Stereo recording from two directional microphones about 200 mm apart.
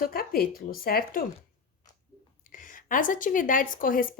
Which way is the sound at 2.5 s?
40° left (ahead or behind).